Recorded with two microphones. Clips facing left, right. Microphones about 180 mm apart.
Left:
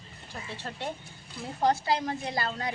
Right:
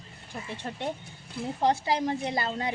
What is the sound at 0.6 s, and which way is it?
A woman's voice, 20° right (ahead or behind).